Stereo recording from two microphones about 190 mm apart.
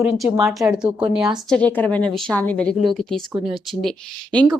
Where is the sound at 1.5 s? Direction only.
10° left (ahead or behind).